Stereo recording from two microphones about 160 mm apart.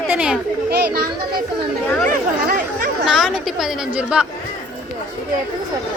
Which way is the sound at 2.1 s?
55° right (ahead or behind).